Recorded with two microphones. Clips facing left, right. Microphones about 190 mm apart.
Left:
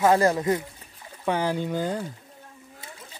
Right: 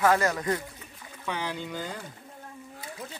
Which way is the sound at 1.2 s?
45° left (ahead or behind).